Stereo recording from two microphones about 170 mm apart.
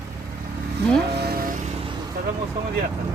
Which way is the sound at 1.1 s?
70° right (ahead or behind).